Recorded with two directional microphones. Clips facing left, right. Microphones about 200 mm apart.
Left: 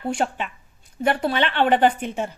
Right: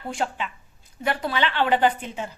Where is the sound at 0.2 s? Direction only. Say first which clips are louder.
Left 3 dB; 55° left (ahead or behind).